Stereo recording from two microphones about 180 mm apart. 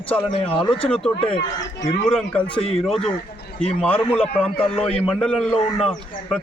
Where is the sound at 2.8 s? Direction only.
Centre (ahead or behind).